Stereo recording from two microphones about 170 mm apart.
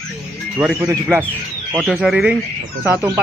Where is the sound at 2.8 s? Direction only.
15° right (ahead or behind).